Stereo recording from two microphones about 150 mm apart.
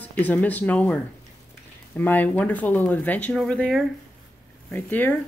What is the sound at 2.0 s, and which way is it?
Speech, 10° left (ahead or behind).